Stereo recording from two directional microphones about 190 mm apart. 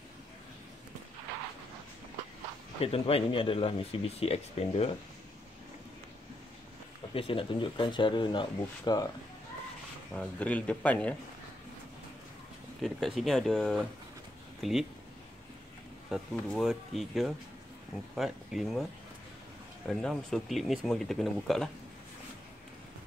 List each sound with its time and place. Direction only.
2.8 s speech: 30° left (ahead or behind)
7.2 s speech: 30° left (ahead or behind)
10.1 s speech: 5° left (ahead or behind)
12.8 s speech: centre (ahead or behind)
16.1 s speech: centre (ahead or behind)
19.9 s speech: centre (ahead or behind)